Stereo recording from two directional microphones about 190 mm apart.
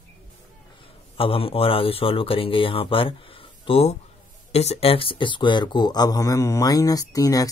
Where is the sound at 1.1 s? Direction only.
30° left (ahead or behind).